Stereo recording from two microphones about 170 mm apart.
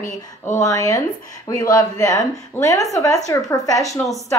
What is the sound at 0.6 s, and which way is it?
A woman's voice, 20° left (ahead or behind).